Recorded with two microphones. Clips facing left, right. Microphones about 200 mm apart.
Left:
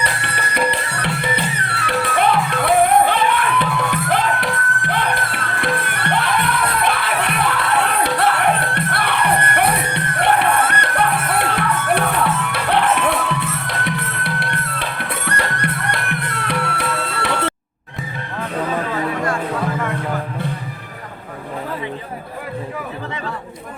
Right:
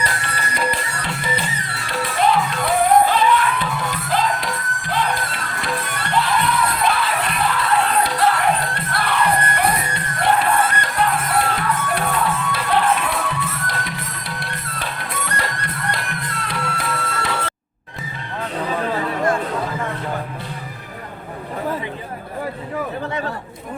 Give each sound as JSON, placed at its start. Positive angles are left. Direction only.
{"t": 0.0, "sound": "music", "side_deg": 65}